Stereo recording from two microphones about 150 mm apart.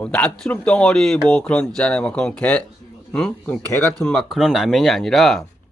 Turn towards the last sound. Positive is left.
turn(degrees=0)  # may be behind; listen again after turning